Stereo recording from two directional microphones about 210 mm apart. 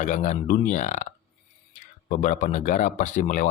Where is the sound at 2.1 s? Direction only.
40° left (ahead or behind).